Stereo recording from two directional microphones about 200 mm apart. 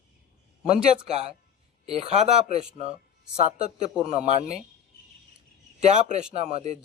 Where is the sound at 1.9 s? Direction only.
30° right (ahead or behind).